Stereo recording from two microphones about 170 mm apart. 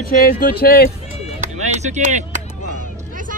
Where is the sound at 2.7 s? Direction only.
50° right (ahead or behind).